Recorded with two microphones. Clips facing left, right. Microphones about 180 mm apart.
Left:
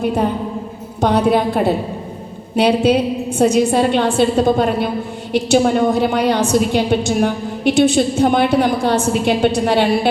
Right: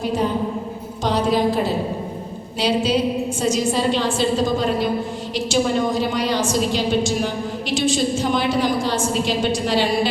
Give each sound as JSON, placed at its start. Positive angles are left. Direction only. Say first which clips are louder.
{"t": 0.0, "sound": "a woman's voice", "louder": "left 3 dB", "side_deg": 60}